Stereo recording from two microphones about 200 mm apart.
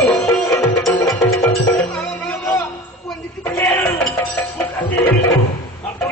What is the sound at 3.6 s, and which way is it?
Music, 10° left (ahead or behind).